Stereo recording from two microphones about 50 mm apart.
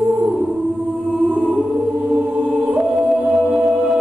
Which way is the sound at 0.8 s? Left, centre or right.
Right.